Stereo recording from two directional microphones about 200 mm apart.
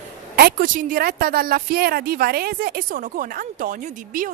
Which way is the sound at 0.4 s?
45° right (ahead or behind).